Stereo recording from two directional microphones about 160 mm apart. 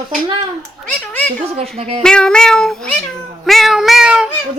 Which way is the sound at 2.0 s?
5° left (ahead or behind).